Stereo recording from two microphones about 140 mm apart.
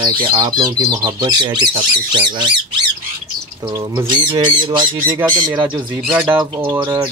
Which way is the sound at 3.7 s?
20° right (ahead or behind).